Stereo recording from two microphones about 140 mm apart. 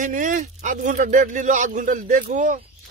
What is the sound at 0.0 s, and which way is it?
Speech, 70° right (ahead or behind).